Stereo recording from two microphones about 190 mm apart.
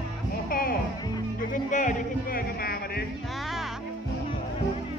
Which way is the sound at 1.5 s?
40° left (ahead or behind).